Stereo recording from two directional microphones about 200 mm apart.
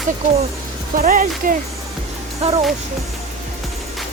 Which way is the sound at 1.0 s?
45° right (ahead or behind).